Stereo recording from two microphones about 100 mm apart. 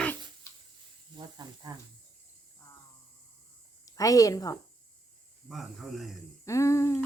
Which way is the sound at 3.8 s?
35° left (ahead or behind).